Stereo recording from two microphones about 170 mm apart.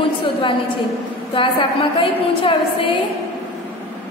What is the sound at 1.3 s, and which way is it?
A woman's voice, 30° left (ahead or behind).